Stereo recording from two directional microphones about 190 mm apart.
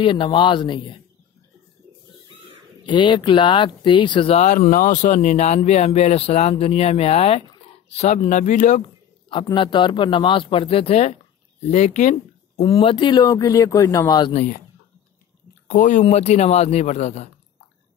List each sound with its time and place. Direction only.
0.0 s speech: 25° left (ahead or behind)
2.9 s speech: 25° left (ahead or behind)
4.6 s speech: 45° left (ahead or behind)
9.3 s speech: 25° left (ahead or behind)
14.3 s speech: 45° left (ahead or behind)
15.7 s speech: 40° left (ahead or behind)